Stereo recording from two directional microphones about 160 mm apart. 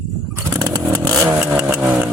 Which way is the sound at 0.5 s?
25° right (ahead or behind).